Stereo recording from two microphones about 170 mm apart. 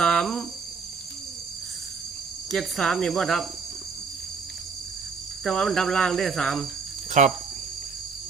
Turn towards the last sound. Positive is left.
turn(degrees=-45)  # may be behind; listen again after turning